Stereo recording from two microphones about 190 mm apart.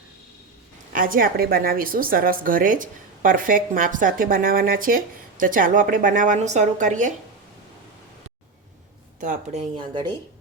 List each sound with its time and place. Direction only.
0.9 s a woman's voice: 50° right (ahead or behind)
9.2 s speech: 35° right (ahead or behind)